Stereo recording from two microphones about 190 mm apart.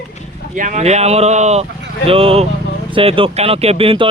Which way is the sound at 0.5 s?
40° right (ahead or behind).